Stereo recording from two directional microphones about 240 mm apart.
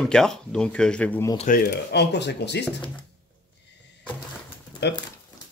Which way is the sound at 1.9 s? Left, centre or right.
Left.